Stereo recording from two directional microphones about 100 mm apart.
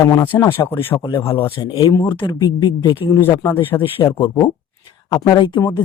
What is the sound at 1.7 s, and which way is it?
Speech, 40° left (ahead or behind).